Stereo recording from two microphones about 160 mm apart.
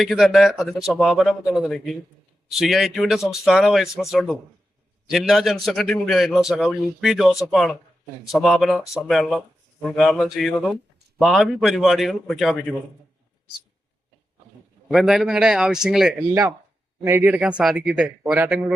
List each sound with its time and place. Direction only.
0.0 s a man's voice: centre (ahead or behind)
14.9 s a man's voice: centre (ahead or behind)
16.3 s a man's voice: 20° right (ahead or behind)